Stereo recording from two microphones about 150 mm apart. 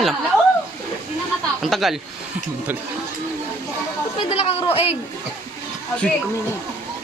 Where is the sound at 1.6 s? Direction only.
Centre (ahead or behind).